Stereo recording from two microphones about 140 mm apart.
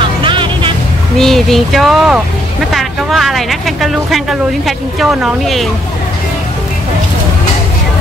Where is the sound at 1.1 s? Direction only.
Centre (ahead or behind).